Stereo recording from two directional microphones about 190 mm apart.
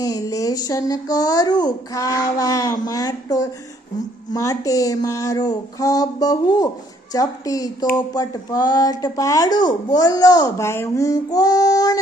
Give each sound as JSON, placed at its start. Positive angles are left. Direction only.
{"t": 0.0, "sound": "a woman's voice", "side_deg": 20}